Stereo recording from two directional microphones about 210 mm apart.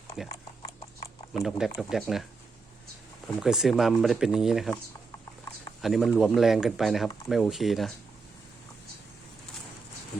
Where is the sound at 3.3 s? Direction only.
5° right (ahead or behind).